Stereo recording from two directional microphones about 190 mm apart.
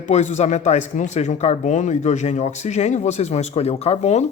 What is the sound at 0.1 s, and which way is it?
Speech, 35° left (ahead or behind).